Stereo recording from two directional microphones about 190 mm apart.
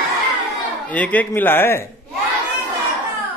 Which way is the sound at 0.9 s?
10° left (ahead or behind).